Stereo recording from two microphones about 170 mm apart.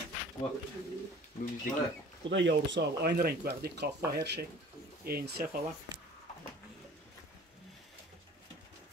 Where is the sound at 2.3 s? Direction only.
90° right.